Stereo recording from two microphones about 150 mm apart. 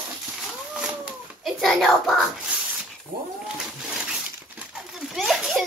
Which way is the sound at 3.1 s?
70° right (ahead or behind).